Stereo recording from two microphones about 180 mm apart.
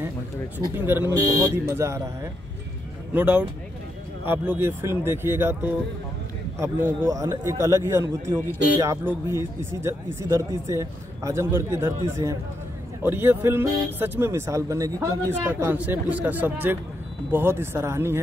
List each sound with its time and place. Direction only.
0.7 s speech: 10° right (ahead or behind)
3.1 s speech: 10° right (ahead or behind)